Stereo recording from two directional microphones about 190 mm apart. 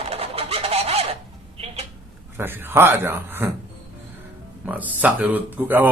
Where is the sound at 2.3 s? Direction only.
10° right (ahead or behind).